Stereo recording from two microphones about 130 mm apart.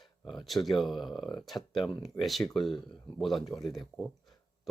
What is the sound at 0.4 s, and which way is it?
Speech, centre (ahead or behind).